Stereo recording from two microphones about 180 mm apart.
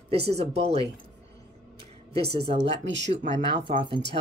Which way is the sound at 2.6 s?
85° right.